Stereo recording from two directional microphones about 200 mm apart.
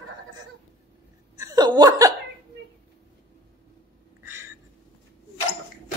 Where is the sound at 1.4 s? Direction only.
20° right (ahead or behind).